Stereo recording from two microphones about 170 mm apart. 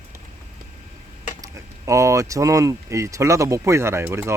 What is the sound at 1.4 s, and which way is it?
Speech, 20° right (ahead or behind).